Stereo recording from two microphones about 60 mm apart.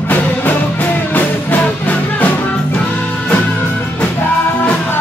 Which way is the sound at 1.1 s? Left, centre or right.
Left.